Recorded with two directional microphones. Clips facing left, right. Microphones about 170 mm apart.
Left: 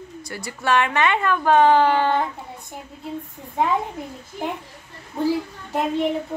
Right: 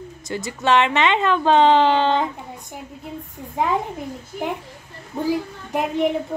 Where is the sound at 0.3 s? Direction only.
20° right (ahead or behind).